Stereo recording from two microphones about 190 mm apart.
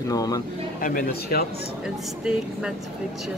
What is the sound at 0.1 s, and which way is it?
Speech, 20° left (ahead or behind).